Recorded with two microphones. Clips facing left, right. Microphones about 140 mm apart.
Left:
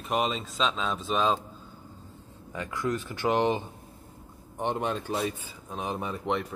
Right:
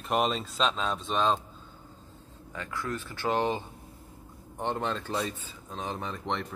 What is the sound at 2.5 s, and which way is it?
Speech, 15° left (ahead or behind).